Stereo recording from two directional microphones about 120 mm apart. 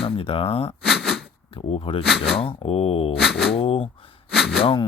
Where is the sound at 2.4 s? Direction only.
50° left (ahead or behind).